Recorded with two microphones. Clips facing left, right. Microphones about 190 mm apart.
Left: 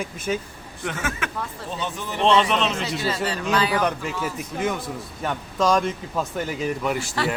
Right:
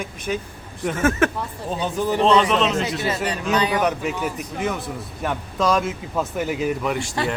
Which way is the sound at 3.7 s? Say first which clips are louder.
Right 2 dB; centre (ahead or behind).